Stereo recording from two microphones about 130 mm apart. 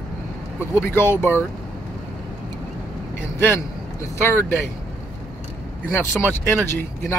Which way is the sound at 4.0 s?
20° left (ahead or behind).